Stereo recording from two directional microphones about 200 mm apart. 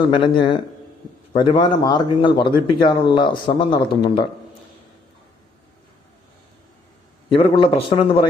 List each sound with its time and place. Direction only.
0.1 s a man's voice: 25° left (ahead or behind)
7.3 s a man's voice: 25° left (ahead or behind)